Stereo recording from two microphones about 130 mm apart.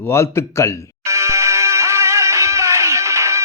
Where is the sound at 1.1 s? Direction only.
20° right (ahead or behind).